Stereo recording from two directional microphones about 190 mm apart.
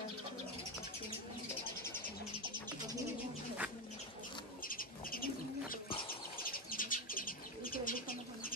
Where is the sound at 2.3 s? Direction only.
25° right (ahead or behind).